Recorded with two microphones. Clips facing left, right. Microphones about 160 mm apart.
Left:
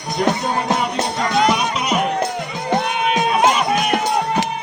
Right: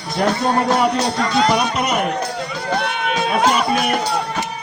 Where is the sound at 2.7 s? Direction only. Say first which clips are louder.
Left 3 dB; 20° left (ahead or behind).